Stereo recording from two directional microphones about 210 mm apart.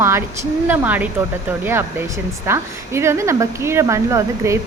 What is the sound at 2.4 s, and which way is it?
Speech, 10° right (ahead or behind).